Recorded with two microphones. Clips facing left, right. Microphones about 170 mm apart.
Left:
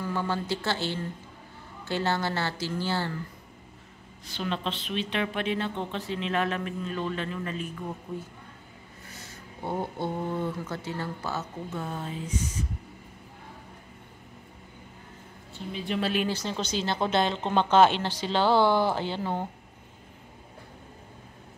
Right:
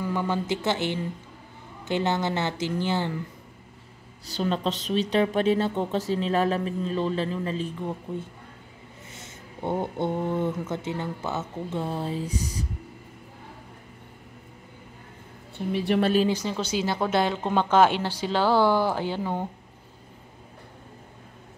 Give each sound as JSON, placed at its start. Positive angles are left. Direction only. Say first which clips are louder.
{"t": 0.0, "sound": "speech", "louder": "right 3 dB", "side_deg": -15}
{"t": 4.3, "sound": "speech", "louder": "right 5 dB", "side_deg": -40}
{"t": 9.1, "sound": "a sound", "louder": "right 1 dB", "side_deg": -20}
{"t": 10.7, "sound": "speech", "louder": "right 4 dB", "side_deg": -20}
{"t": 15.5, "sound": "a woman's voice", "louder": "right 7 dB", "side_deg": -60}
{"t": 16.3, "sound": "speech", "louder": "right 4 dB", "side_deg": -10}